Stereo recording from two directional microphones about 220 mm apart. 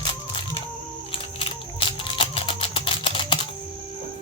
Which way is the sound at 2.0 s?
25° left (ahead or behind).